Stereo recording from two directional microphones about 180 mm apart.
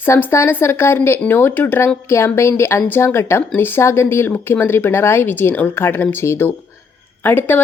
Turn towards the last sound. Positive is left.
turn(degrees=10)  # may be behind; listen again after turning